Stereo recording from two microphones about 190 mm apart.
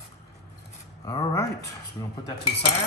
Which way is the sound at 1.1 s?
20° left (ahead or behind).